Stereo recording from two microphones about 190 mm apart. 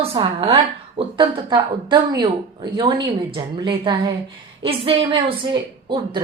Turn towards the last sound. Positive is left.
turn(degrees=-25)  # may be behind; listen again after turning